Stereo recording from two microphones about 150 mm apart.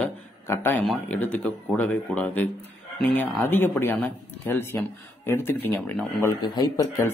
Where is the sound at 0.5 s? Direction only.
15° left (ahead or behind).